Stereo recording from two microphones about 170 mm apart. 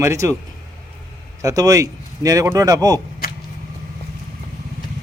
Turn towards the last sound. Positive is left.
turn(degrees=60)  # may be behind; listen again after turning